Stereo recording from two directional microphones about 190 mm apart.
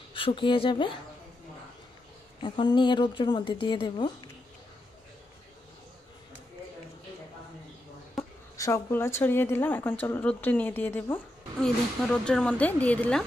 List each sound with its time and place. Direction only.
0.1 s speech: 25° left (ahead or behind)
2.4 s speech: 25° left (ahead or behind)
8.2 s speech: 15° left (ahead or behind)